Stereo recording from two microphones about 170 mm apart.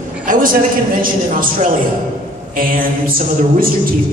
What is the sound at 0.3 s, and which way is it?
A woman's voice, 55° right (ahead or behind).